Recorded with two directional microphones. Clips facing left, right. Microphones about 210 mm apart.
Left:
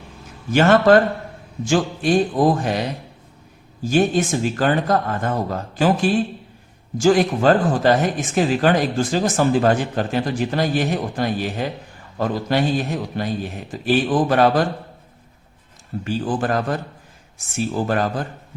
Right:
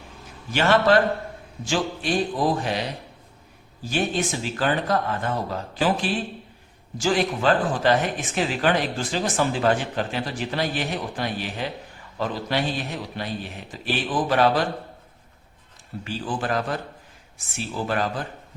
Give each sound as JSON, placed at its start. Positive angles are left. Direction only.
{"t": 0.5, "sound": "speech", "side_deg": 45}
{"t": 2.4, "sound": "speech", "side_deg": 45}
{"t": 3.8, "sound": "speech", "side_deg": 45}
{"t": 16.0, "sound": "speech", "side_deg": 45}